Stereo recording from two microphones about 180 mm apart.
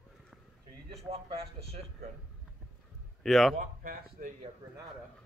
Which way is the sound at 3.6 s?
50° right (ahead or behind).